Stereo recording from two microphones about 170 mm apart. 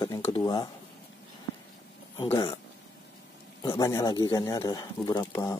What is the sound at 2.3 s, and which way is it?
Speech, 25° left (ahead or behind).